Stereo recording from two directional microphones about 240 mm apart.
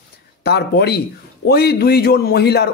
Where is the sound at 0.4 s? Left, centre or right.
Left.